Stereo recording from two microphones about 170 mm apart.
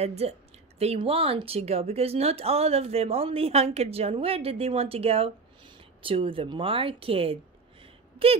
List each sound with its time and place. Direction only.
0.0 s speech: 40° right (ahead or behind)